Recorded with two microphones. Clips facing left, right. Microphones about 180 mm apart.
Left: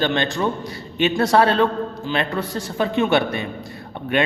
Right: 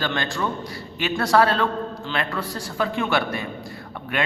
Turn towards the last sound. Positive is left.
turn(degrees=25)  # may be behind; listen again after turning